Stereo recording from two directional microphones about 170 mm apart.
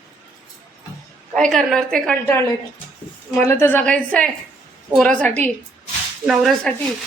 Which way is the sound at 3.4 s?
15° left (ahead or behind).